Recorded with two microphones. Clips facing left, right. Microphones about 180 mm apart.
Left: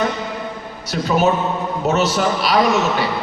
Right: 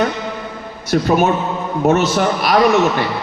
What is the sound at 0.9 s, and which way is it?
A man's voice, 50° right (ahead or behind).